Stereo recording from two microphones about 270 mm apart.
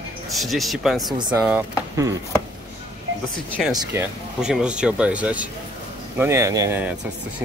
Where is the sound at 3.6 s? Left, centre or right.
Centre.